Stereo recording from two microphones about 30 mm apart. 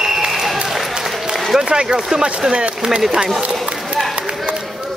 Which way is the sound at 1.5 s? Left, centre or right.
Right.